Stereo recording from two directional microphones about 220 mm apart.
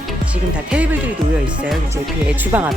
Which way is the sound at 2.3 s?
5° right (ahead or behind).